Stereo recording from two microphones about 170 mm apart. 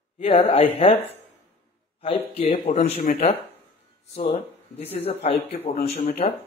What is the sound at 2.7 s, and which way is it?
Speech, 55° left (ahead or behind).